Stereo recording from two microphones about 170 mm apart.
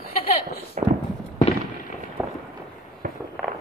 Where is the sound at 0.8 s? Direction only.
45° right (ahead or behind).